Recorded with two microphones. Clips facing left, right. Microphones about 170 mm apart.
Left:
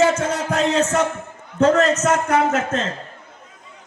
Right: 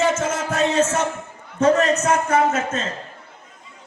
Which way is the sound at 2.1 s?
75° left (ahead or behind).